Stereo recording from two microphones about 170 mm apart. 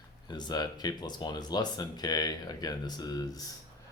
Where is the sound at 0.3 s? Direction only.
25° left (ahead or behind).